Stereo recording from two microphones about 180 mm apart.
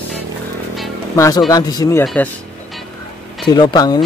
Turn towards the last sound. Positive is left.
turn(degrees=20)  # may be behind; listen again after turning